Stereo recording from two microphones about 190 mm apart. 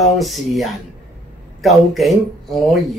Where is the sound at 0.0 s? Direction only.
Centre (ahead or behind).